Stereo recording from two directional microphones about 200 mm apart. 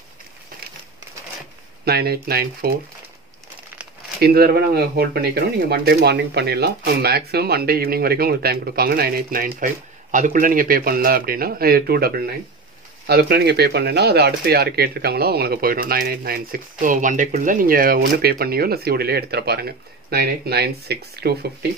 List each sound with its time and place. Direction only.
1.9 s speech: 50° right (ahead or behind)
4.2 s speech: 50° right (ahead or behind)